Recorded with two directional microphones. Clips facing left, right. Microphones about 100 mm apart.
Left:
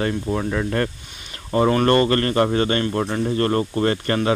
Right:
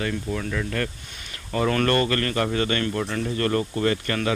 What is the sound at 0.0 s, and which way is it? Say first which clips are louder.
Speech: left 5 dB; 35° left (ahead or behind).